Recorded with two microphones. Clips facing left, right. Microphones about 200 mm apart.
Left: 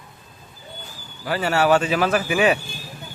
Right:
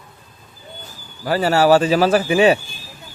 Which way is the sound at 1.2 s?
35° right (ahead or behind).